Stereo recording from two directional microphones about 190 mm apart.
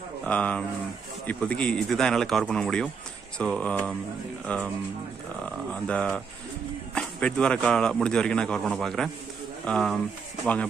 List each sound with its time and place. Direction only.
0.3 s speech: 5° left (ahead or behind)